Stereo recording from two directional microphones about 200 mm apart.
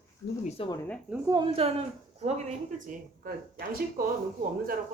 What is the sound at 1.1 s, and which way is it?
A woman's voice, 15° right (ahead or behind).